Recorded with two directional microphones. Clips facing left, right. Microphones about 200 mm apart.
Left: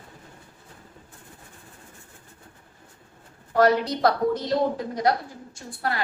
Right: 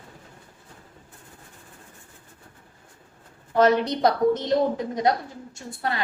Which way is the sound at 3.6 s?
20° right (ahead or behind).